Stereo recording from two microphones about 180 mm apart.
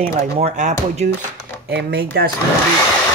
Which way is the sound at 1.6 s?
65° right (ahead or behind).